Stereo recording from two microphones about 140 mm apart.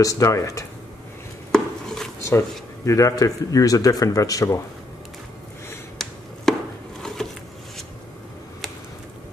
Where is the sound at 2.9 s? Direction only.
25° left (ahead or behind).